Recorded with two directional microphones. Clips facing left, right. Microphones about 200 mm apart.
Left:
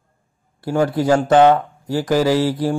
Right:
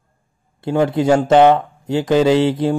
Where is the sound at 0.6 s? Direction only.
20° right (ahead or behind).